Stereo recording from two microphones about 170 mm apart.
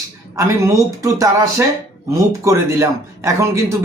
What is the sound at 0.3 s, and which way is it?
Speech, 20° right (ahead or behind).